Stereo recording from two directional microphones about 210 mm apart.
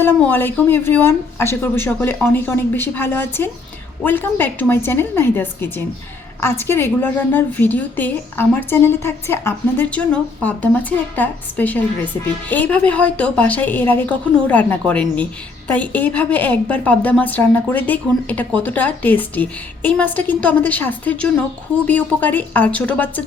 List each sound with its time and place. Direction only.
0.0 s a woman's voice: 10° left (ahead or behind)